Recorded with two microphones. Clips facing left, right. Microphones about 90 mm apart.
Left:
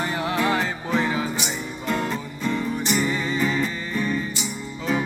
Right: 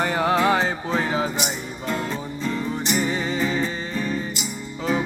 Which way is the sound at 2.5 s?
30° right (ahead or behind).